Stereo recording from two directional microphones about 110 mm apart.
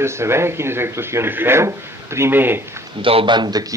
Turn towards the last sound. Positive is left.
turn(degrees=-40)  # may be behind; listen again after turning